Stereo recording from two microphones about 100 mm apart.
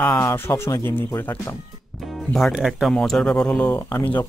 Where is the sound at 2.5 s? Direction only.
5° right (ahead or behind).